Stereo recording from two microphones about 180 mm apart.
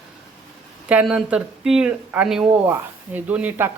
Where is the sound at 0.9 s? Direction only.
5° right (ahead or behind).